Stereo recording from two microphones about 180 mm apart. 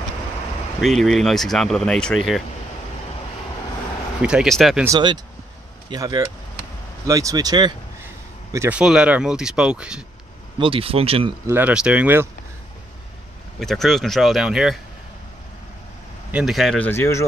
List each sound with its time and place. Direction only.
0.7 s speech: centre (ahead or behind)
4.2 s speech: 5° right (ahead or behind)
4.8 s speech: 25° right (ahead or behind)
8.5 s speech: 10° right (ahead or behind)
10.6 s speech: 30° right (ahead or behind)
11.4 s speech: 10° right (ahead or behind)
13.6 s speech: centre (ahead or behind)
16.3 s speech: 5° right (ahead or behind); by 17.3 s 15° left (ahead or behind)